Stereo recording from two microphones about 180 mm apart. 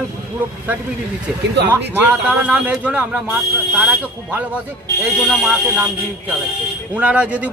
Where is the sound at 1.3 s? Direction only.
Centre (ahead or behind).